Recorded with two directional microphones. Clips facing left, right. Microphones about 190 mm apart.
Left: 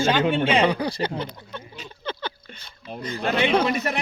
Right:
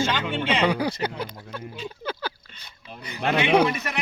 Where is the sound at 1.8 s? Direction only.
5° right (ahead or behind).